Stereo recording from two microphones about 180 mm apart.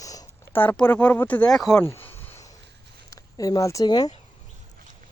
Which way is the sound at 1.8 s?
10° left (ahead or behind).